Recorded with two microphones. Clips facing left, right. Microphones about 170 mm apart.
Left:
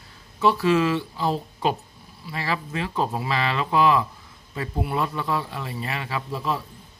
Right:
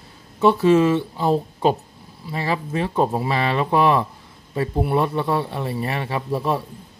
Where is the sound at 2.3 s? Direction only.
25° right (ahead or behind).